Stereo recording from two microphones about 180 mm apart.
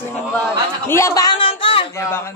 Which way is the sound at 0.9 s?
15° left (ahead or behind).